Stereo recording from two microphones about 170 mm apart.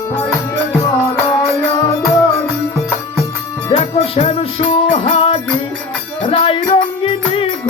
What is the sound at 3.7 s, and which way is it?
Music, 40° left (ahead or behind).